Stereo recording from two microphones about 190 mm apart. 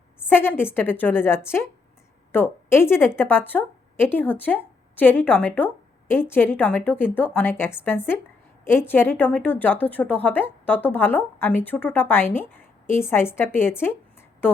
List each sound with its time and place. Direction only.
0.3 s a woman's voice: 10° left (ahead or behind)